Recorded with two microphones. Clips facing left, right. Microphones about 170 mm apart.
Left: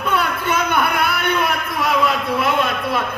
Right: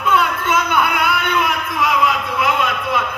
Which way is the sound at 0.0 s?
35° left (ahead or behind).